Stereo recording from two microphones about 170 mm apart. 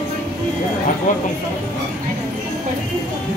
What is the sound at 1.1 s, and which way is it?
Speech, 50° left (ahead or behind).